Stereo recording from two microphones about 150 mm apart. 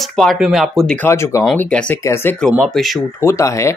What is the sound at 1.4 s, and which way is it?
Speech, 5° left (ahead or behind).